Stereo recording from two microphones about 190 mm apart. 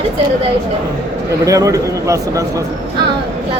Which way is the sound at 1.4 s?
15° right (ahead or behind).